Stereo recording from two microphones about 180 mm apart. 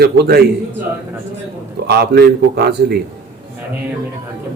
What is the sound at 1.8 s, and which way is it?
Speech, 65° right (ahead or behind).